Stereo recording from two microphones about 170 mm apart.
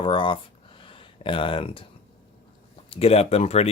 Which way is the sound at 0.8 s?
30° left (ahead or behind).